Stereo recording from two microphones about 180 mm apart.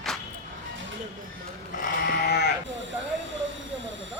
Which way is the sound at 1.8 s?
55° left (ahead or behind).